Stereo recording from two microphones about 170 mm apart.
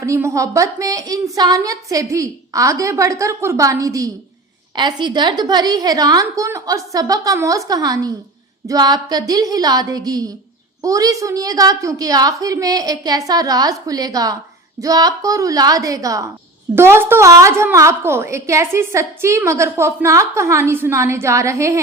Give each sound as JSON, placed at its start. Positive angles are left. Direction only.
{"t": 0.0, "sound": "a woman's voice", "side_deg": -15}